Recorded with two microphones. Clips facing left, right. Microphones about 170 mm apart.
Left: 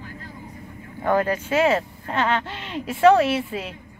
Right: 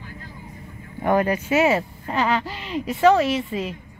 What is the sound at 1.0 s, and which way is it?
Speech, 15° right (ahead or behind).